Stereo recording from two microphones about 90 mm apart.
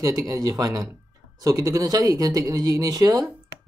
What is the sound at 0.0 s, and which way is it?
Speech, 40° right (ahead or behind).